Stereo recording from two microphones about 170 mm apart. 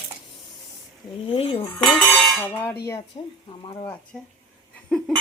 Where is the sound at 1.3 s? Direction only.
35° left (ahead or behind).